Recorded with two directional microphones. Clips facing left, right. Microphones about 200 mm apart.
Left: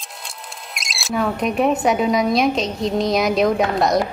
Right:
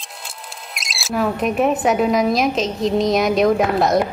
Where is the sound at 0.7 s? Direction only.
Centre (ahead or behind).